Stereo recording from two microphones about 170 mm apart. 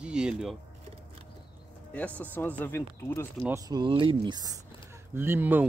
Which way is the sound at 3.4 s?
20° right (ahead or behind).